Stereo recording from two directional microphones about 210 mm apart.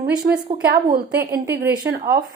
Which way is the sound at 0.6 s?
40° right (ahead or behind).